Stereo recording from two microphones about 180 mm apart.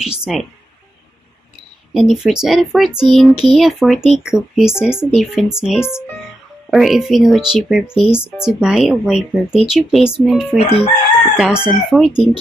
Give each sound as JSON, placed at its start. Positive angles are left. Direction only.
{"t": 0.0, "sound": "speech", "side_deg": -5}
{"t": 2.0, "sound": "speech", "side_deg": 0}
{"t": 5.8, "sound": "speech", "side_deg": 15}
{"t": 6.7, "sound": "speech", "side_deg": 0}
{"t": 10.6, "sound": "chicken", "side_deg": 35}
{"t": 11.3, "sound": "speech", "side_deg": -5}